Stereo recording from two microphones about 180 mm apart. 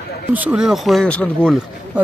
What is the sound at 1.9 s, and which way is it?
Speech, 10° right (ahead or behind).